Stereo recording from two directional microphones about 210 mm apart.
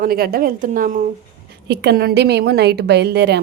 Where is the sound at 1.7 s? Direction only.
50° right (ahead or behind).